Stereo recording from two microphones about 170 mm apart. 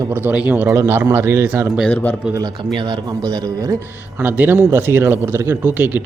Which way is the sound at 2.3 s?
25° right (ahead or behind).